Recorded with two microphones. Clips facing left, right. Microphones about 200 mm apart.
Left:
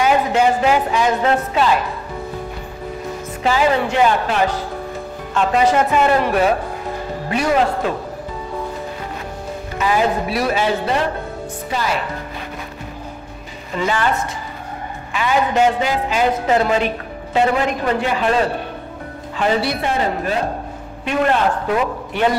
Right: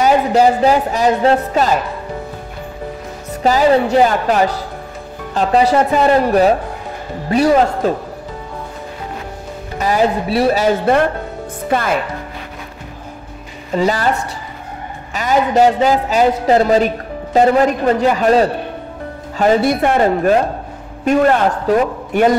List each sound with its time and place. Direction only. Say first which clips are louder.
0.0 s a woman's voice: right 4 dB; 35° right (ahead or behind)
3.4 s a woman's voice: right 5 dB; 40° right (ahead or behind)
9.8 s a woman's voice: right 3 dB; 40° right (ahead or behind)
10.6 s a man's voice: right 5 dB; 55° right (ahead or behind)
13.7 s a woman's voice: right 4 dB; 40° right (ahead or behind)
15.1 s a woman's voice: right 4 dB; 40° right (ahead or behind)